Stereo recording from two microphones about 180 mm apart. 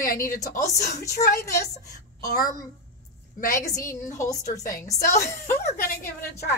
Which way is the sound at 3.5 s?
15° left (ahead or behind).